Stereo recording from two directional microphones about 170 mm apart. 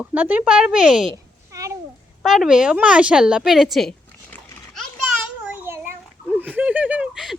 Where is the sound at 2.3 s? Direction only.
5° right (ahead or behind).